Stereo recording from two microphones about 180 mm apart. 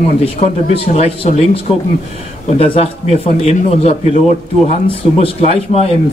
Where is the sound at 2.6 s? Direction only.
35° left (ahead or behind).